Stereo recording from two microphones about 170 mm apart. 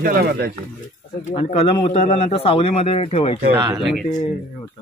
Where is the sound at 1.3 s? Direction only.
35° left (ahead or behind).